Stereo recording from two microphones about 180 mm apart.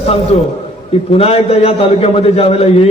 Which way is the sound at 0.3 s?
35° left (ahead or behind).